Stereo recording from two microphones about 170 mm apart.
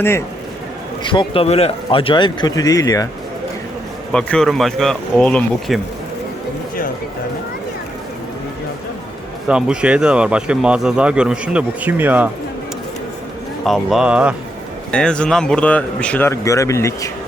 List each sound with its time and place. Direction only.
1.0 s speech: 30° left (ahead or behind)
4.1 s speech: 5° left (ahead or behind)
9.5 s speech: 5° right (ahead or behind)
13.7 s speech: 5° right (ahead or behind)
14.9 s speech: 5° left (ahead or behind)